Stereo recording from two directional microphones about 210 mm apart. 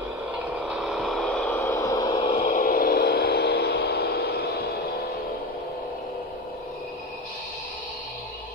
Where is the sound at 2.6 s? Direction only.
45° left (ahead or behind).